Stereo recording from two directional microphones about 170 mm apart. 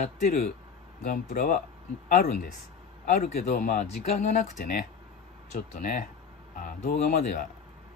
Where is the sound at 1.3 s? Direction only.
55° left (ahead or behind).